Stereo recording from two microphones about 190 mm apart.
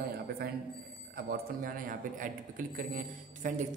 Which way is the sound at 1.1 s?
45° right (ahead or behind).